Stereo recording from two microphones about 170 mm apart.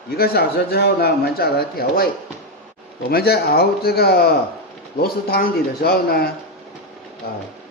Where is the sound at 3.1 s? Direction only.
65° left (ahead or behind).